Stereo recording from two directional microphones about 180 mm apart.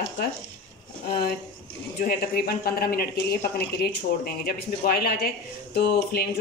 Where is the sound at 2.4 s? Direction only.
60° left (ahead or behind).